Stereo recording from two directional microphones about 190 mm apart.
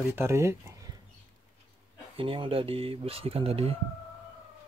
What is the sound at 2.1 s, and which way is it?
Speech, 30° right (ahead or behind).